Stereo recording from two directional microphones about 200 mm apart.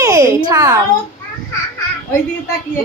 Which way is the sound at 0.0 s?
15° right (ahead or behind).